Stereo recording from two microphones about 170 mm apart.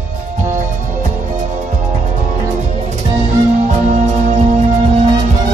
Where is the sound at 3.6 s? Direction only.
45° right (ahead or behind).